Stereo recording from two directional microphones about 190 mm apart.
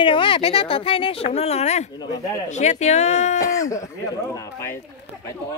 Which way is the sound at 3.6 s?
15° left (ahead or behind).